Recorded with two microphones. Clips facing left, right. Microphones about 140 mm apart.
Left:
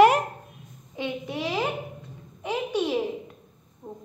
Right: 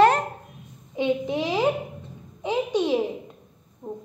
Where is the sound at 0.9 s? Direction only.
20° right (ahead or behind).